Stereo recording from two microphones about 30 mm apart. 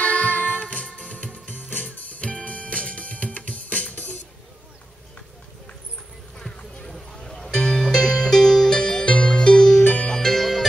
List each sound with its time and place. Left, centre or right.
0.0 s music: left
1.5 s music: left
1.9 s music: left
7.2 s music: centre; by 9.6 s left
9.6 s music: centre